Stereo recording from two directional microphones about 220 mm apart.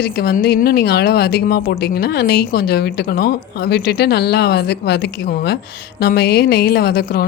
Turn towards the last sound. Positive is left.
turn(degrees=45)  # may be behind; listen again after turning